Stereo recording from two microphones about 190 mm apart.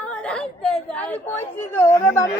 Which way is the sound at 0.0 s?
5° left (ahead or behind).